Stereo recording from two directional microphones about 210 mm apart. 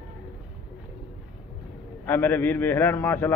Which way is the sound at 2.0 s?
10° left (ahead or behind).